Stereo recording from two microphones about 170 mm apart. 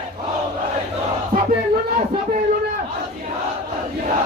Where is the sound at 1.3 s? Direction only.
55° right (ahead or behind).